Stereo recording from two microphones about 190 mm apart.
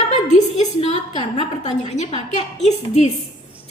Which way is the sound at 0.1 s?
35° left (ahead or behind).